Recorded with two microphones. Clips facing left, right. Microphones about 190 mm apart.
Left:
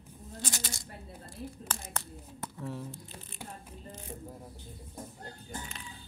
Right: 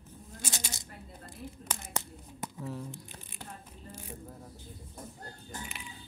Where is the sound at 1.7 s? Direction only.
15° right (ahead or behind).